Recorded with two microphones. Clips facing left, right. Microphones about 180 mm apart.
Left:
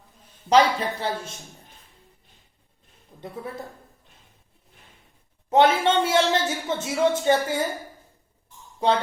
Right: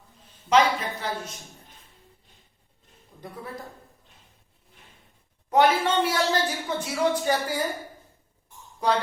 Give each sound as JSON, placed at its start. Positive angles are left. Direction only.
{"t": 0.5, "sound": "a man's voice", "side_deg": 30}
{"t": 3.2, "sound": "a woman's voice", "side_deg": 25}
{"t": 5.5, "sound": "a woman's voice", "side_deg": 25}